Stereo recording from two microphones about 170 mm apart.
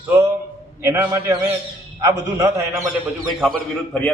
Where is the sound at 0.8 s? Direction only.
15° right (ahead or behind).